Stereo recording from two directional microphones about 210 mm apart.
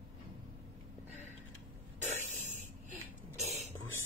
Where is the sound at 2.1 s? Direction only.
35° right (ahead or behind).